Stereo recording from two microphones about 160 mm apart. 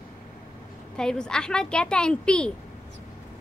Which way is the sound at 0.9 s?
5° left (ahead or behind).